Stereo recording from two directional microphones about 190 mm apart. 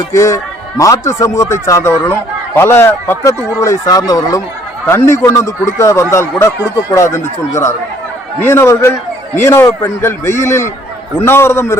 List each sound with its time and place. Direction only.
0.1 s a man's voice: 15° left (ahead or behind)